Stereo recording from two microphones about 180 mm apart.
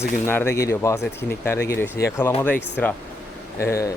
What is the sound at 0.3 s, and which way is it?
Speech, 10° left (ahead or behind).